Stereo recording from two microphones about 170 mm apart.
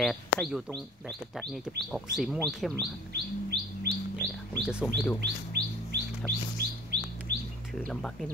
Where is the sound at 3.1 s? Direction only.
75° right (ahead or behind).